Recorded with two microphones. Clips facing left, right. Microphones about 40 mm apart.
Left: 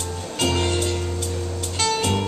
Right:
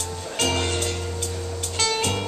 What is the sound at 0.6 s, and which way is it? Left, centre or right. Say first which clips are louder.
Music: left 3 dB; left.